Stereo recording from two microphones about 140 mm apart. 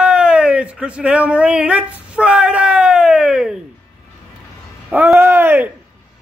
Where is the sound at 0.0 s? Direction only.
5° right (ahead or behind).